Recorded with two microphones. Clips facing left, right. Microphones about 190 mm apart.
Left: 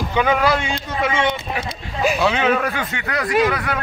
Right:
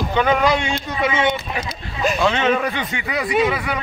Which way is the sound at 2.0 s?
5° left (ahead or behind).